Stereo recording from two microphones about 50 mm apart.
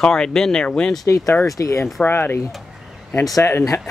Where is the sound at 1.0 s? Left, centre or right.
Left.